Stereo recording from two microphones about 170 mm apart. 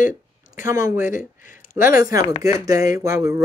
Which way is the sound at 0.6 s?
15° right (ahead or behind).